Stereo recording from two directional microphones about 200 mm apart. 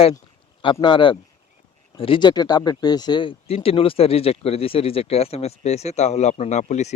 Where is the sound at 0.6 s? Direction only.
25° left (ahead or behind).